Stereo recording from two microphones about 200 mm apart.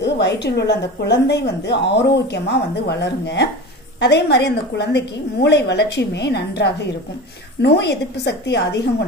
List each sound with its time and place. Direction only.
0.0 s speech: 60° left (ahead or behind)